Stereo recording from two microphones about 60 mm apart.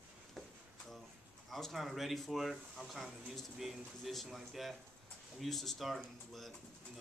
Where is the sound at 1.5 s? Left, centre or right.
Centre.